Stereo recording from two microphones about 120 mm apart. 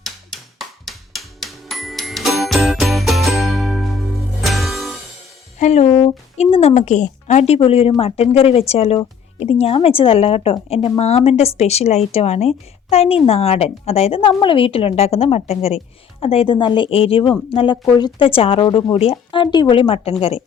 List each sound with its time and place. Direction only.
0.6 s music: centre (ahead or behind)
5.5 s speech: 75° left (ahead or behind)
5.9 s a woman's voice: 45° left (ahead or behind)
6.3 s a woman's voice: 65° left (ahead or behind); by 18.3 s 35° left (ahead or behind)
18.3 s a woman's voice: 50° left (ahead or behind)
18.6 s a woman's voice: 35° left (ahead or behind); by 20.4 s 55° left (ahead or behind)